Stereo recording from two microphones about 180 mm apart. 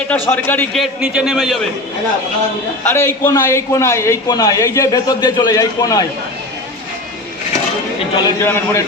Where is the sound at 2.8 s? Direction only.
10° left (ahead or behind).